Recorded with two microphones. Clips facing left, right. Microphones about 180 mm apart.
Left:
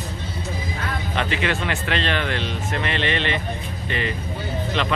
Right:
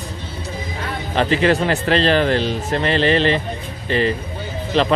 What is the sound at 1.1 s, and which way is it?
Speech, 35° right (ahead or behind).